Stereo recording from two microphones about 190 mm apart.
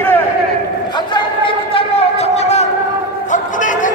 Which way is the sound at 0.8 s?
25° left (ahead or behind).